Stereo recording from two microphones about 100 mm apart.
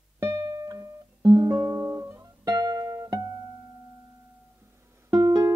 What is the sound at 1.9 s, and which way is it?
Guitar, 25° right (ahead or behind).